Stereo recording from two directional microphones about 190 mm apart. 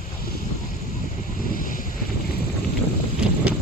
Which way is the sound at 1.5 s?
45° left (ahead or behind).